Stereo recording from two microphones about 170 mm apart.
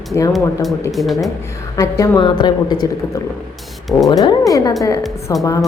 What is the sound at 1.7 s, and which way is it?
A woman's voice, 20° left (ahead or behind).